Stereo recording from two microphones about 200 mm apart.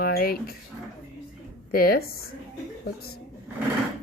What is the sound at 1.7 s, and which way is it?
Speech, 50° left (ahead or behind).